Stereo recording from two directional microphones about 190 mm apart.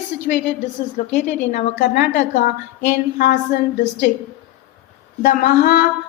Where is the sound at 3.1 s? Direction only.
55° left (ahead or behind).